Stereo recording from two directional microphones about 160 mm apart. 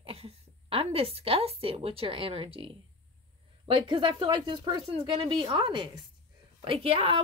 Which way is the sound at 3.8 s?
35° right (ahead or behind).